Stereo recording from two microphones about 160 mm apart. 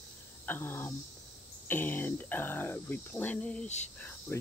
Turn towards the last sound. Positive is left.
turn(degrees=15)  # may be behind; listen again after turning